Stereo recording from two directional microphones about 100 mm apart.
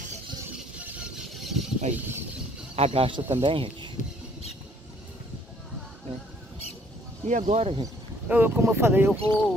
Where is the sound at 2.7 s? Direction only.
80° right; by 3.6 s 65° right (ahead or behind).